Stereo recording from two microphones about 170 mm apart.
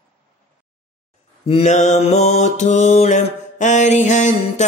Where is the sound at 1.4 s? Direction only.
40° left (ahead or behind).